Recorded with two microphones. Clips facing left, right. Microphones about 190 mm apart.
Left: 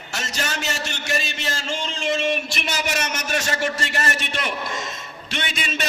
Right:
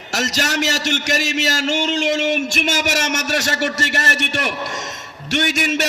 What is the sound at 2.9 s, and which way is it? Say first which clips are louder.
A man's voice: right 4 dB; 90° right.